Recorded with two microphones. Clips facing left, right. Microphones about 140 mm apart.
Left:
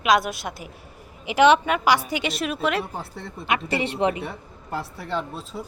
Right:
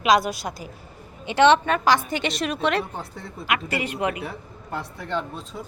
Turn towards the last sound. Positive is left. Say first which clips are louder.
# even
turn(degrees=0)  # may be behind; listen again after turning